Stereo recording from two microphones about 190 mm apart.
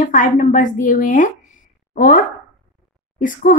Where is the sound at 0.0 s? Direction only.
40° left (ahead or behind).